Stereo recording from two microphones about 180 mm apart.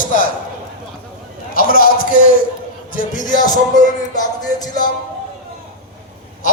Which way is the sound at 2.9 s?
50° left (ahead or behind).